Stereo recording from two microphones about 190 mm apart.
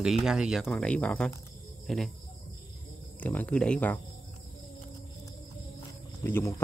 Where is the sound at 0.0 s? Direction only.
Centre (ahead or behind).